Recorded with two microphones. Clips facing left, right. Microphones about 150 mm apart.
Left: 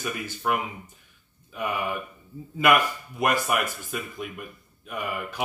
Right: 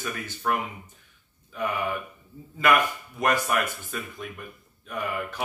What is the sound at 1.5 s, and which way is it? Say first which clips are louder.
Speech: even; 10° left (ahead or behind).